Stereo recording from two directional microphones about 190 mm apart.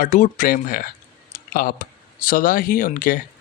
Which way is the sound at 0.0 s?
45° left (ahead or behind).